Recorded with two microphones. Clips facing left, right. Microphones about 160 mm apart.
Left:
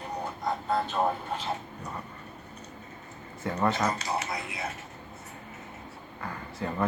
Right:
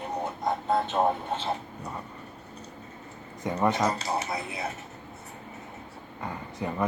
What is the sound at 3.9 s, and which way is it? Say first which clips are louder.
Speech: right 2 dB; 30° right (ahead or behind).